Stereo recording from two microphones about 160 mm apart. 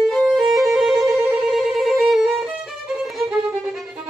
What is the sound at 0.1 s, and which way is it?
Music, centre (ahead or behind).